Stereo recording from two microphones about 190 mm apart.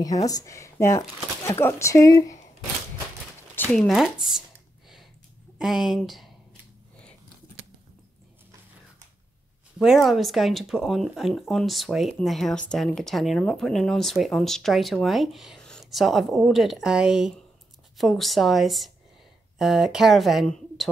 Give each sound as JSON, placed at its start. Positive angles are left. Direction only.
{"t": 0.0, "sound": "speech", "side_deg": 20}
{"t": 3.5, "sound": "speech", "side_deg": 5}
{"t": 5.6, "sound": "speech", "side_deg": 0}
{"t": 9.8, "sound": "speech", "side_deg": 0}